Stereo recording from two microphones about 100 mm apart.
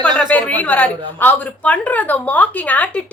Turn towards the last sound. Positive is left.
turn(degrees=15)  # may be behind; listen again after turning